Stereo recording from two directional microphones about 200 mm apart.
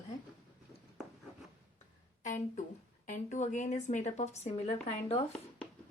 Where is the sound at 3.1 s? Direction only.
35° left (ahead or behind).